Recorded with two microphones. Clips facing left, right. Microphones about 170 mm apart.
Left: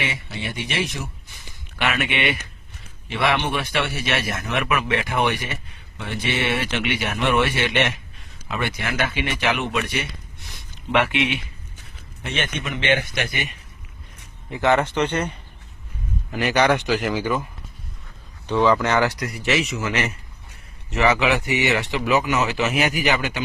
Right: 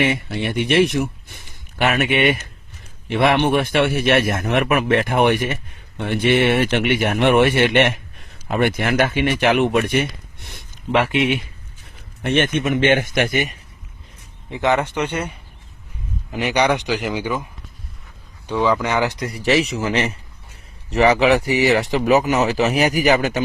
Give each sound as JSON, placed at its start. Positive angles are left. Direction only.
{"t": 0.0, "sound": "speech", "side_deg": -55}
{"t": 1.8, "sound": "speech", "side_deg": -40}
{"t": 10.9, "sound": "speech", "side_deg": -40}
{"t": 12.2, "sound": "speech", "side_deg": -55}
{"t": 14.5, "sound": "speech", "side_deg": -15}
{"t": 16.4, "sound": "speech", "side_deg": -15}
{"t": 18.4, "sound": "speech", "side_deg": -10}
{"t": 19.2, "sound": "speech", "side_deg": -35}